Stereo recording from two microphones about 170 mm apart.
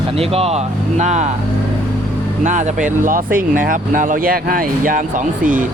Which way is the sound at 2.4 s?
50° right (ahead or behind).